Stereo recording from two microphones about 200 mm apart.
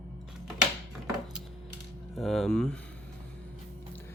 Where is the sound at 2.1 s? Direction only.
Centre (ahead or behind).